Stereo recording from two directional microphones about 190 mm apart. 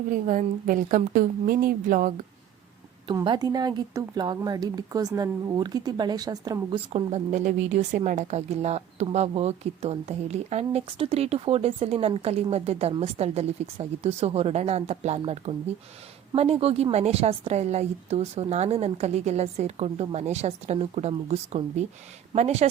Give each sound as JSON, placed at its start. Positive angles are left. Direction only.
{"t": 0.1, "sound": "a woman's voice", "side_deg": -45}
{"t": 3.2, "sound": "speech", "side_deg": -20}